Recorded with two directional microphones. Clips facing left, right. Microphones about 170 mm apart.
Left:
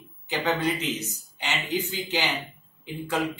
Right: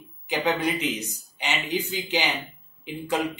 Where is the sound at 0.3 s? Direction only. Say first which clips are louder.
Right 1 dB; 15° right (ahead or behind).